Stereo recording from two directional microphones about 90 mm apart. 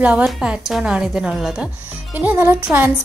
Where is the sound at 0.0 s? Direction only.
15° right (ahead or behind).